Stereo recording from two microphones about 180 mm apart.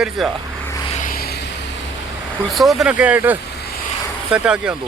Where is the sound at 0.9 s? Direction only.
50° left (ahead or behind).